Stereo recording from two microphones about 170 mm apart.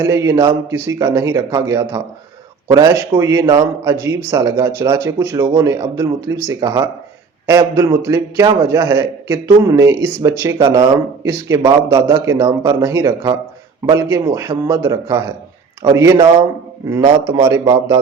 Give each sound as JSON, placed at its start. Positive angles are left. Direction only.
{"t": 0.0, "sound": "a man's voice", "side_deg": -20}